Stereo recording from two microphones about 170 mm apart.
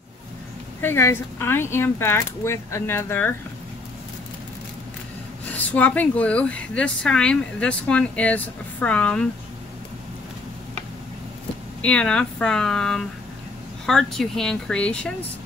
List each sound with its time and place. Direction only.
0.7 s speech: 15° left (ahead or behind)
5.4 s speech: 10° left (ahead or behind)
11.8 s speech: 5° left (ahead or behind)